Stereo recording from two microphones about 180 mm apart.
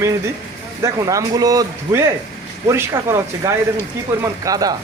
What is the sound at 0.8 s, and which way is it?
A man's voice, 20° right (ahead or behind).